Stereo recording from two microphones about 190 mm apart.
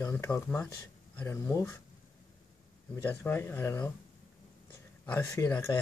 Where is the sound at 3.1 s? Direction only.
10° left (ahead or behind).